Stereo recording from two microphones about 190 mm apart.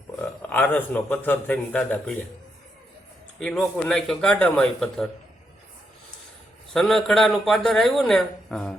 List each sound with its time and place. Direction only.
0.2 s a man's voice: 10° left (ahead or behind)
3.4 s speech: centre (ahead or behind)
6.7 s speech: centre (ahead or behind)